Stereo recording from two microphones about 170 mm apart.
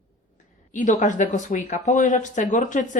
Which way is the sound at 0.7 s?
45° left (ahead or behind).